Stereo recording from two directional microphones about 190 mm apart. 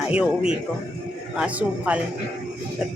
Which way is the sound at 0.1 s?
5° right (ahead or behind).